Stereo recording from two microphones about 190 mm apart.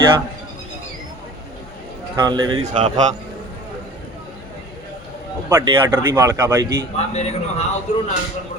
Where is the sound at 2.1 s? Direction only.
20° right (ahead or behind).